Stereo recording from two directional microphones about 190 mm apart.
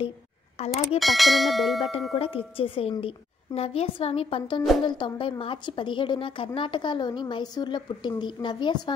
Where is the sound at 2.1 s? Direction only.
30° left (ahead or behind).